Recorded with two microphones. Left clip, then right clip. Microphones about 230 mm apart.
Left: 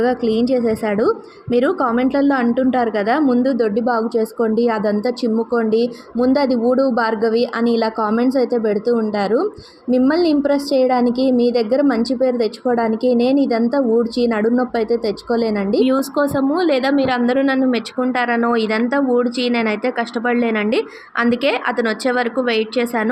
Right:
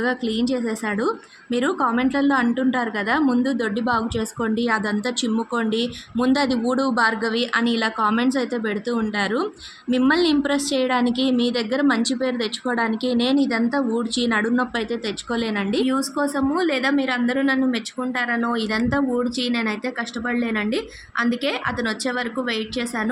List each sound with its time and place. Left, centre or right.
0.0 s a woman's voice: centre
14.4 s speech: centre
14.8 s a woman's voice: centre
16.4 s speech: centre
18.4 s a woman's voice: centre
20.2 s speech: centre
20.7 s a woman's voice: centre